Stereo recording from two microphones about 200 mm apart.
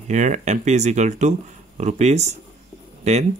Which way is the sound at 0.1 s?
35° right (ahead or behind).